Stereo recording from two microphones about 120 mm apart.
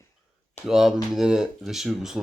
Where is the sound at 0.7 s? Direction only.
5° right (ahead or behind).